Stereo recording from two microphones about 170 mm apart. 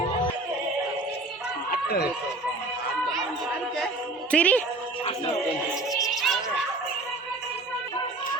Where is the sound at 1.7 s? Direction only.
70° left (ahead or behind).